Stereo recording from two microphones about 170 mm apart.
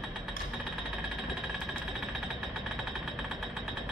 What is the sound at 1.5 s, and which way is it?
Jackhammer, centre (ahead or behind).